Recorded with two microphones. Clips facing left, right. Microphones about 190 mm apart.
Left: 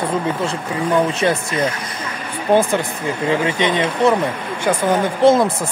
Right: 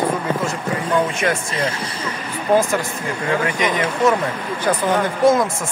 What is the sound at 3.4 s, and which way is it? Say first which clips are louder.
Speech: left 2 dB; 25° left (ahead or behind).